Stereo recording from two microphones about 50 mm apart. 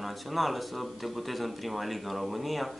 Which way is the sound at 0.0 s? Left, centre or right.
Centre.